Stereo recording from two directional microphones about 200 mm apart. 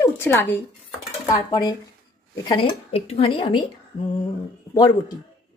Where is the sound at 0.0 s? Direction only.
10° left (ahead or behind).